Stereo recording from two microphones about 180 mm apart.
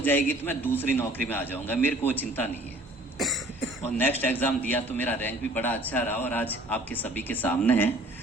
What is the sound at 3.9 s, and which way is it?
A man's voice, 10° left (ahead or behind).